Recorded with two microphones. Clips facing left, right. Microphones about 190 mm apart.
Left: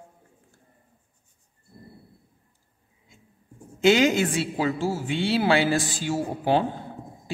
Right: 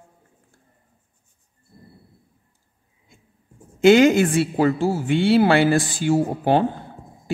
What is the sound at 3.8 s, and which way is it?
A woman's voice, 55° right (ahead or behind).